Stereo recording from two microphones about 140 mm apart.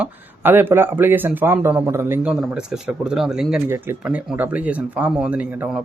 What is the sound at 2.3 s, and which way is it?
Speech, 5° right (ahead or behind).